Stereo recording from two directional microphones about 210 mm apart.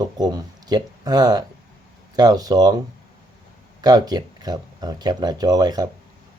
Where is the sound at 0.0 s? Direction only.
20° right (ahead or behind).